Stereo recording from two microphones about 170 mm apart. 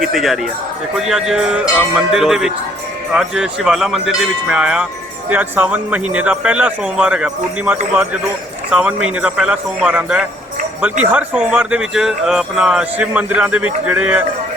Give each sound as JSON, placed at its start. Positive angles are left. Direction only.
{"t": 0.0, "sound": "speech", "side_deg": 0}